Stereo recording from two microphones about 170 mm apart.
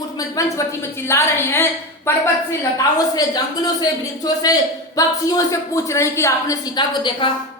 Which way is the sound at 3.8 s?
20° left (ahead or behind).